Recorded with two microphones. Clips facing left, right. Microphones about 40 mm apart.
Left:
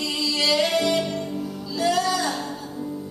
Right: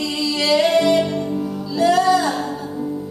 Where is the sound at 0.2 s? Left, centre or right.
Centre.